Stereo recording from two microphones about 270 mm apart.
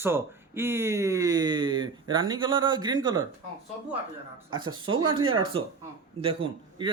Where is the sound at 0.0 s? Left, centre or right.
Centre.